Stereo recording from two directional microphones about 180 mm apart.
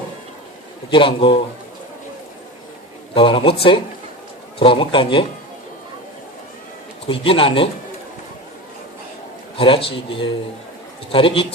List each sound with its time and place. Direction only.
0.9 s a man's voice: 30° left (ahead or behind)
3.2 s a man's voice: 30° left (ahead or behind)
7.1 s a man's voice: 30° left (ahead or behind)
9.6 s a man's voice: 30° left (ahead or behind)